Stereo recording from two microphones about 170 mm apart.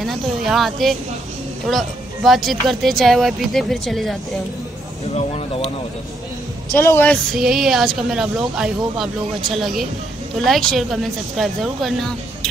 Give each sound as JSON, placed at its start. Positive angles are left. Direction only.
{"t": 0.0, "sound": "a sound", "side_deg": 0}
{"t": 1.7, "sound": "speech", "side_deg": 0}
{"t": 5.0, "sound": "speech", "side_deg": 35}
{"t": 6.7, "sound": "a woman's voice", "side_deg": 15}
{"t": 7.3, "sound": "speech", "side_deg": 0}